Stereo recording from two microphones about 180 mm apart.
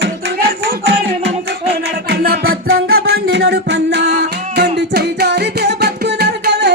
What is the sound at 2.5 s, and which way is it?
Music, 75° right (ahead or behind).